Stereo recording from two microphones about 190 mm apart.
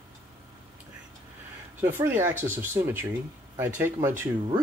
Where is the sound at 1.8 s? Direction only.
15° right (ahead or behind).